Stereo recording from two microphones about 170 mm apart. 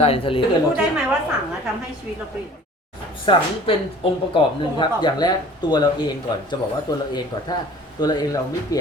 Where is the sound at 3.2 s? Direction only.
30° left (ahead or behind).